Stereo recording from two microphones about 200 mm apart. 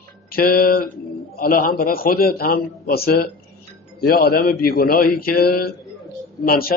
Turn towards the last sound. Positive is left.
turn(degrees=50)  # may be behind; listen again after turning